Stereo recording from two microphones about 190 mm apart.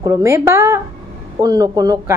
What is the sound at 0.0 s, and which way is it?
A woman's voice, 15° right (ahead or behind).